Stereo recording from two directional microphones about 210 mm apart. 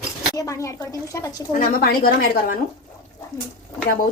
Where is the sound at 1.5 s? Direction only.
45° left (ahead or behind).